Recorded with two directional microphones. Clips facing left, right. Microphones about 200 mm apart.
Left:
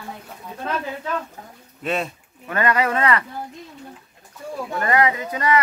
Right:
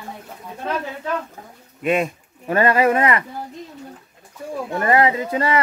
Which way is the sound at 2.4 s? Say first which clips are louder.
Right 5 dB; 30° right (ahead or behind).